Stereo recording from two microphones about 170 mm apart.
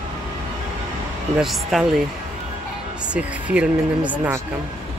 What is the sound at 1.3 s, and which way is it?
Speech, centre (ahead or behind).